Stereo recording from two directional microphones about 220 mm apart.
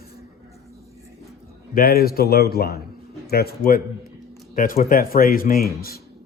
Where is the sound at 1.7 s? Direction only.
40° left (ahead or behind).